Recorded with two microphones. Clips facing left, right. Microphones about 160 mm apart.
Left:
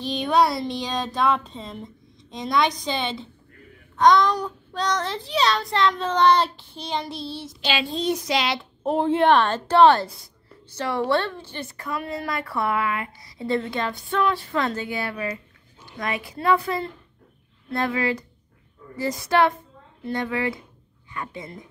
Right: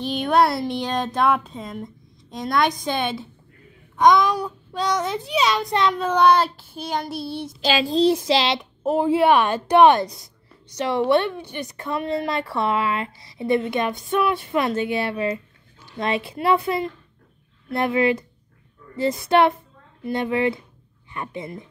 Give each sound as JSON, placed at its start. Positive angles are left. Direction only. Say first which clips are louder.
{"t": 0.2, "sound": "a child's voice", "louder": "right 1 dB", "side_deg": -10}
{"t": 0.7, "sound": "a sound", "louder": "right 3 dB", "side_deg": -55}
{"t": 1.4, "sound": "a child's voice", "louder": "right 3 dB", "side_deg": -10}
{"t": 7.6, "sound": "a child's voice", "louder": "right 6 dB", "side_deg": -40}
{"t": 8.8, "sound": "a woman's voice", "louder": "right 1 dB", "side_deg": -5}